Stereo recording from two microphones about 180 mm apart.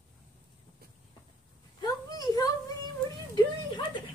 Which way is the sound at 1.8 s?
20° left (ahead or behind).